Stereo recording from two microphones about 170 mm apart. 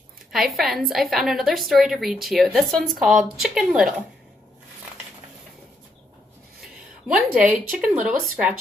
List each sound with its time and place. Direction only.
0.3 s a woman's voice: centre (ahead or behind)
7.1 s speech: 5° right (ahead or behind)